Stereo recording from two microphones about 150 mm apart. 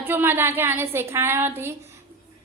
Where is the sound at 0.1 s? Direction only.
15° right (ahead or behind).